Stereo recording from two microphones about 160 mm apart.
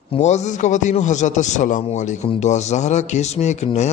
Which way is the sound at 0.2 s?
45° left (ahead or behind).